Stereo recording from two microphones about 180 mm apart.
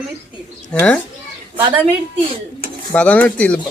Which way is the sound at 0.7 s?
5° left (ahead or behind).